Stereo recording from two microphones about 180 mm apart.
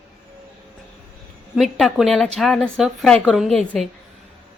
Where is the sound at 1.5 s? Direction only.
Centre (ahead or behind).